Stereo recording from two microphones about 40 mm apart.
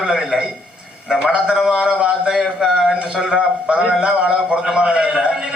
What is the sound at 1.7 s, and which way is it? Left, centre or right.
Speech, right.